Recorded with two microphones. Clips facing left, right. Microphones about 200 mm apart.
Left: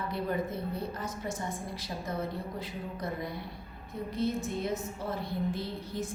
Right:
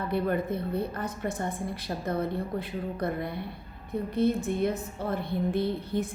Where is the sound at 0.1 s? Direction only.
60° right (ahead or behind).